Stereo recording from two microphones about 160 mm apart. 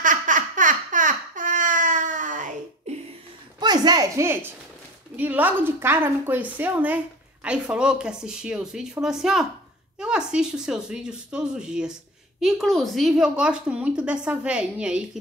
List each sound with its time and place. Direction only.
0.0 s baby laughter: 55° right (ahead or behind)
3.5 s a woman's voice: 25° right (ahead or behind); by 15.0 s 5° right (ahead or behind)